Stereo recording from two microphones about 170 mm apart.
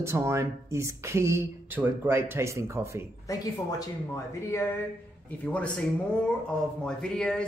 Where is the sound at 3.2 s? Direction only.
20° left (ahead or behind).